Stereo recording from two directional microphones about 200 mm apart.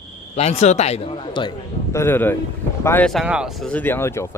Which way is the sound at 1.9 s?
10° left (ahead or behind).